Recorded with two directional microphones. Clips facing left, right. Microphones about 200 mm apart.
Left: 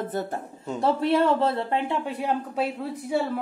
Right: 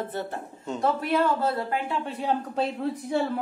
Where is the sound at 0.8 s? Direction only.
25° left (ahead or behind).